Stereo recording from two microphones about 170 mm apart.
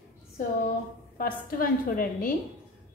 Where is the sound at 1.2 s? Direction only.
55° left (ahead or behind).